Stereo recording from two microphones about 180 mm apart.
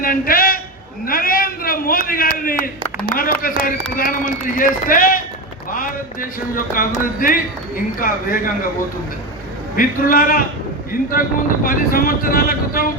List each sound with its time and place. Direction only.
0.0 s a sound: 55° left (ahead or behind)
1.0 s a man's voice: 55° left (ahead or behind)
2.6 s a man's voice: 10° left (ahead or behind)
3.4 s speech: 50° left (ahead or behind)
9.7 s speech: 50° left (ahead or behind)